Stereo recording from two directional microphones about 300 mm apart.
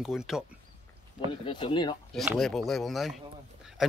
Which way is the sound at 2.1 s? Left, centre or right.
Centre.